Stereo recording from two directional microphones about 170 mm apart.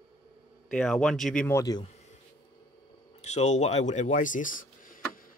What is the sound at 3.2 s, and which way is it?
Speech, 40° left (ahead or behind).